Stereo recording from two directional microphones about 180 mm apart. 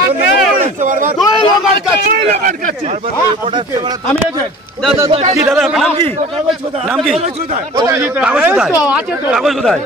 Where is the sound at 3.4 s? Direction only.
25° right (ahead or behind).